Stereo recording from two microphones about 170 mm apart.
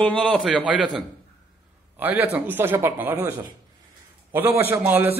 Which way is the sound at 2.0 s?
10° right (ahead or behind).